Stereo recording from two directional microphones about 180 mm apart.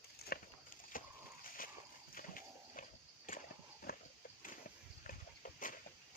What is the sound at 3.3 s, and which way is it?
Horse, 50° left (ahead or behind).